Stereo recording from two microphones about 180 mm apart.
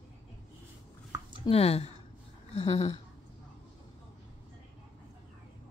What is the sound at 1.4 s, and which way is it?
Speech, 35° left (ahead or behind).